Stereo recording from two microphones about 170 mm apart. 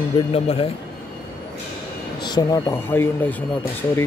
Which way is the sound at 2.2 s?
25° left (ahead or behind).